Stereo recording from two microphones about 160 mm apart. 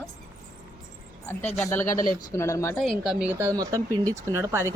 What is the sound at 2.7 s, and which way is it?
Speech, centre (ahead or behind).